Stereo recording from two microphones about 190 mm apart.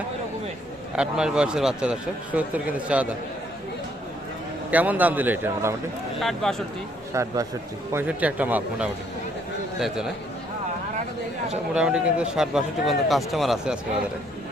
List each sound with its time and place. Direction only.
0.9 s speech: 5° right (ahead or behind)
4.7 s a man's voice: 10° right (ahead or behind)
6.1 s speech: centre (ahead or behind)
7.1 s a man's voice: 15° right (ahead or behind)
11.7 s speech: 5° right (ahead or behind)